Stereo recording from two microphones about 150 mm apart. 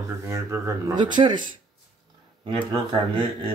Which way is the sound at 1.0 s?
30° right (ahead or behind).